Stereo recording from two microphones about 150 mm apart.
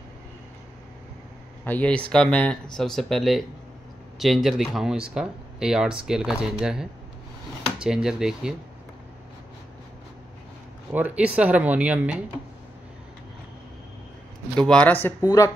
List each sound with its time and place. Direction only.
1.6 s speech: 10° left (ahead or behind)
10.9 s speech: 10° right (ahead or behind)
14.6 s speech: 5° left (ahead or behind)